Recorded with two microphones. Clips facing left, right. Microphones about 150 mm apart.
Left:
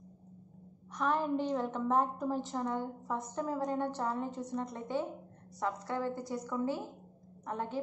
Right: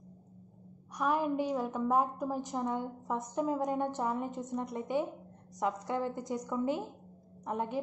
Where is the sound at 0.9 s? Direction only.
10° right (ahead or behind).